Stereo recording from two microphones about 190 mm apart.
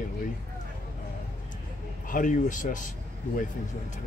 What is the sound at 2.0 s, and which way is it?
Speech, 45° left (ahead or behind).